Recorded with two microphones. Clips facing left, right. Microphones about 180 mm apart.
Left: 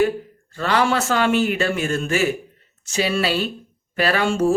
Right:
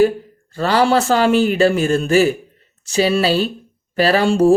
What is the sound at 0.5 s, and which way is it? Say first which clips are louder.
Speech: right 5 dB; 35° right (ahead or behind).